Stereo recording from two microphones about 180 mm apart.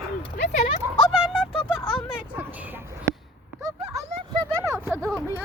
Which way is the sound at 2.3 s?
10° right (ahead or behind).